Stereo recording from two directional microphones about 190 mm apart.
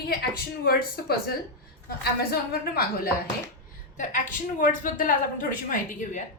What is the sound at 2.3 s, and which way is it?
Speech, 55° left (ahead or behind).